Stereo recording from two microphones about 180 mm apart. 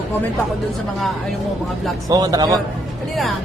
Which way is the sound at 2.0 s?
20° right (ahead or behind).